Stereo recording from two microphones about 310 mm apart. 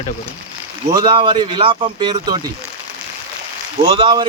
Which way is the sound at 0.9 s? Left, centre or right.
Centre.